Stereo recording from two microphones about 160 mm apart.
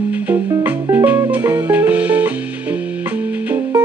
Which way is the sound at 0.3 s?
10° right (ahead or behind).